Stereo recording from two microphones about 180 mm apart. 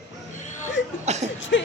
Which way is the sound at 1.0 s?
40° right (ahead or behind).